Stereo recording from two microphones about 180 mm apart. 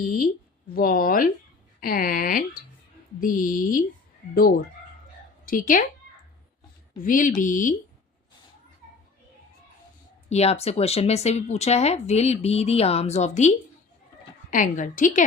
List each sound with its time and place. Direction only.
0.7 s speech: 55° left (ahead or behind)
6.9 s speech: 50° left (ahead or behind)
10.2 s speech: 35° left (ahead or behind)
14.5 s speech: 45° left (ahead or behind)